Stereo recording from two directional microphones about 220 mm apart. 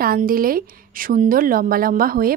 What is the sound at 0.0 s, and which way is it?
A woman's voice, 40° right (ahead or behind).